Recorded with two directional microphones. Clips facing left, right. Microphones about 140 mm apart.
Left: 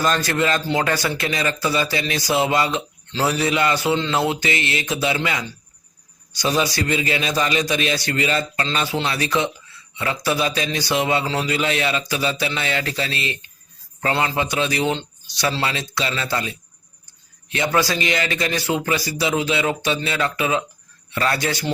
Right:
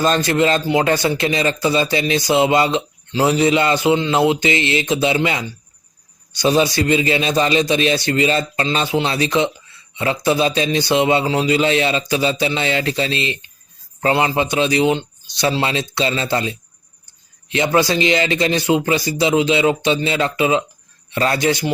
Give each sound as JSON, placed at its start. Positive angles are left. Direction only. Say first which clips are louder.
{"t": 0.0, "sound": "speech", "louder": "right 4 dB", "side_deg": -25}